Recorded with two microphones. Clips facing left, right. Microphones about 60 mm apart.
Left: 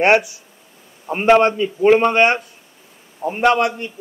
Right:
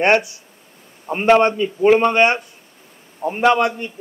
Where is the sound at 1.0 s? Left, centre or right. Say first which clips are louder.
Left 1 dB; centre.